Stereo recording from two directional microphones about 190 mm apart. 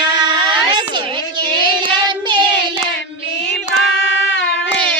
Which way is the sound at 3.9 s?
80° left.